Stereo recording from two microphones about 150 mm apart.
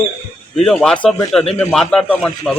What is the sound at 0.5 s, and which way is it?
A man's voice, 5° left (ahead or behind).